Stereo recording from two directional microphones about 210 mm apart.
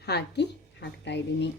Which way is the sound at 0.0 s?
50° left (ahead or behind).